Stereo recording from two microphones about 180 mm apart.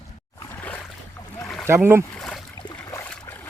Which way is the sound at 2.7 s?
15° left (ahead or behind).